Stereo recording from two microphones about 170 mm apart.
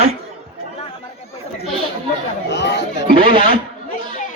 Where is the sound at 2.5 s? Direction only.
90° left.